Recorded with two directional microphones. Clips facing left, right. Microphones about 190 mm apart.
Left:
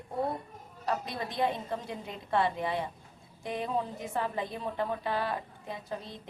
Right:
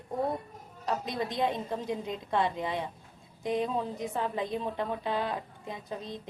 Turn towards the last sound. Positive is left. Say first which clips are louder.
# right 1 dB
turn(degrees=-20)  # may be behind; listen again after turning